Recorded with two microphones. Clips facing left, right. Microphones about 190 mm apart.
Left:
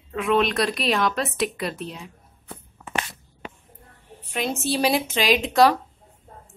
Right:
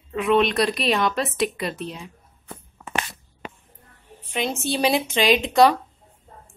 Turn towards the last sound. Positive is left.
turn(degrees=0)  # may be behind; listen again after turning